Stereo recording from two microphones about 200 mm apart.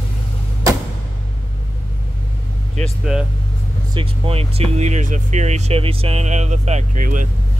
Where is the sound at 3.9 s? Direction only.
25° right (ahead or behind); by 7.3 s 40° right (ahead or behind).